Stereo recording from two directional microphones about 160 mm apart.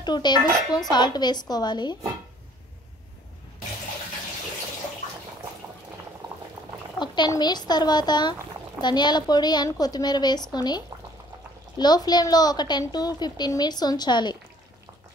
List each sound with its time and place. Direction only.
0.0 s a woman's voice: 25° left (ahead or behind)
7.0 s a woman's voice: 25° left (ahead or behind)
11.8 s a woman's voice: 25° left (ahead or behind)